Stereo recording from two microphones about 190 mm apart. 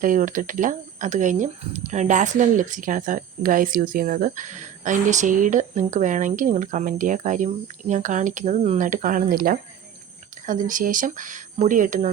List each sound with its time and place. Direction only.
0.0 s speech: 45° right (ahead or behind)